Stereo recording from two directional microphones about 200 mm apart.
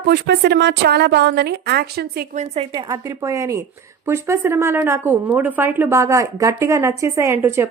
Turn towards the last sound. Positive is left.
turn(degrees=-10)  # may be behind; listen again after turning